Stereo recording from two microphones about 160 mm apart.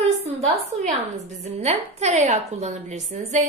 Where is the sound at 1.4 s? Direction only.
40° right (ahead or behind).